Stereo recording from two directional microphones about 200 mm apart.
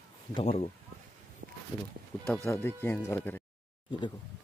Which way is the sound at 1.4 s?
55° right (ahead or behind).